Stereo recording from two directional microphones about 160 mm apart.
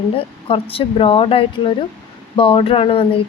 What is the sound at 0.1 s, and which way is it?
A woman's voice, 35° left (ahead or behind).